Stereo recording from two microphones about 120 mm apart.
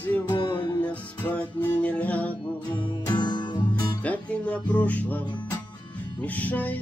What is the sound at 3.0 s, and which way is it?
Music, 40° left (ahead or behind).